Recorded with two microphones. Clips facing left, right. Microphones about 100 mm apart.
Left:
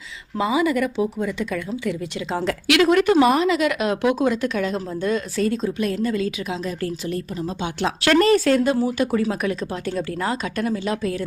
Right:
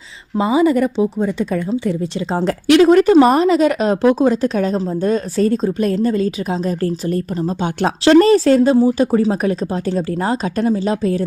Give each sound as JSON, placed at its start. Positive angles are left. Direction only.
{"t": 0.3, "sound": "speech", "side_deg": -30}
{"t": 8.0, "sound": "speech", "side_deg": -30}